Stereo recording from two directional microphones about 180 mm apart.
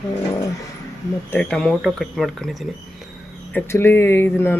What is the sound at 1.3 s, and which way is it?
Speech, 5° left (ahead or behind).